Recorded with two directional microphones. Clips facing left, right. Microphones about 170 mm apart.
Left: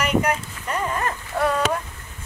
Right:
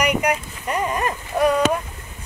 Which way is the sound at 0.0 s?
15° right (ahead or behind).